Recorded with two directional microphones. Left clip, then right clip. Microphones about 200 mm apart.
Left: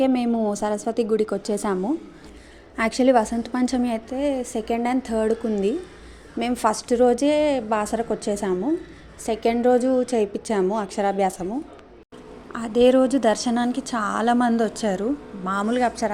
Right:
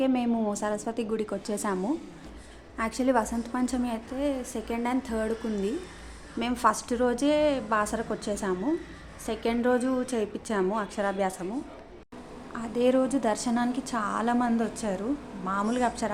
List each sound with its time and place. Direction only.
0.0 s a woman's voice: 20° left (ahead or behind)
2.7 s a woman's voice: 30° left (ahead or behind)
12.5 s a woman's voice: 25° left (ahead or behind)